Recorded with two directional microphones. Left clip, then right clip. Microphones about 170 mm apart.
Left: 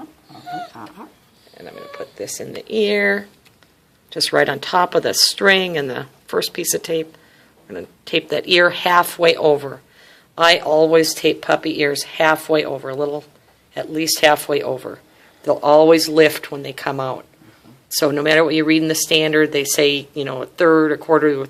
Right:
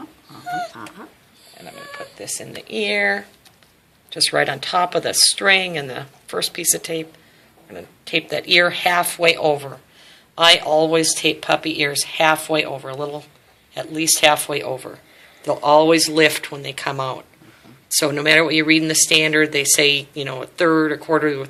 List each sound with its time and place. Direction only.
0.7 s dog: 25° left (ahead or behind)
2.1 s speech: 55° left (ahead or behind)